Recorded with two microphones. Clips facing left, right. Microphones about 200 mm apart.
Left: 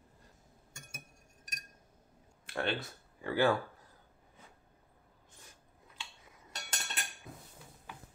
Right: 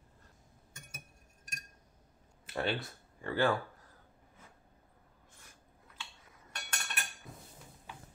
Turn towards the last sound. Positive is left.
turn(degrees=20)  # may be behind; listen again after turning